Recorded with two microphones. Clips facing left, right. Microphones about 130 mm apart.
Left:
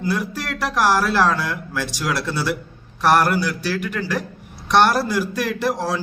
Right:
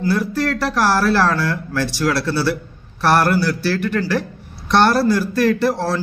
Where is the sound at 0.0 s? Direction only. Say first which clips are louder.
Right 5 dB; 15° left (ahead or behind).